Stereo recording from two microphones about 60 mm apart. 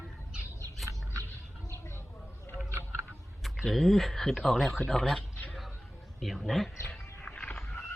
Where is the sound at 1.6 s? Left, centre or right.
Left.